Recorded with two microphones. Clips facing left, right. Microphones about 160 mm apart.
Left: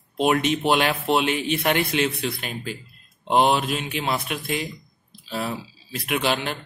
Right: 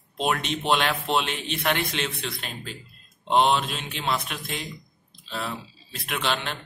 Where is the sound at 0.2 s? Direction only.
5° left (ahead or behind).